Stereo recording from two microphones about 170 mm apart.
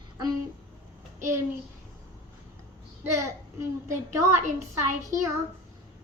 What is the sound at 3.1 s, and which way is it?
A child's voice, 15° right (ahead or behind).